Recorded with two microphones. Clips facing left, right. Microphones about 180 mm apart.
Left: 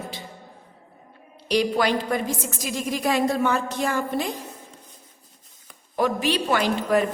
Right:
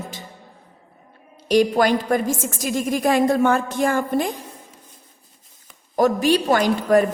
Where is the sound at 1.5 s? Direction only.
45° right (ahead or behind).